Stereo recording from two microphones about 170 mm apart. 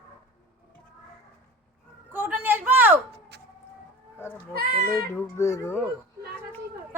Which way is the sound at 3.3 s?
80° right.